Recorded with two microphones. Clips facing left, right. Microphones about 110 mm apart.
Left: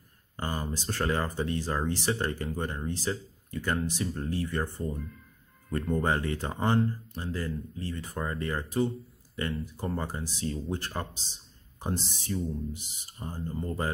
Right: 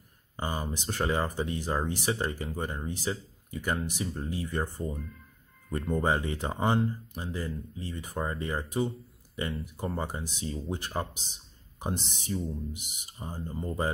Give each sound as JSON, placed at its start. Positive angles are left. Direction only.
{"t": 0.4, "sound": "speech", "side_deg": -10}